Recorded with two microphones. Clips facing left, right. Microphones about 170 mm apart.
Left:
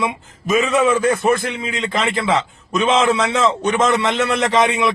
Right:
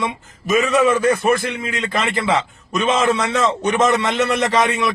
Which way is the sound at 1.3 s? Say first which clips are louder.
Even; 20° left (ahead or behind).